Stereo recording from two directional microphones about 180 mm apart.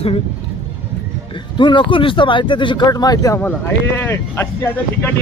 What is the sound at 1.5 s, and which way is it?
Speech, 25° left (ahead or behind).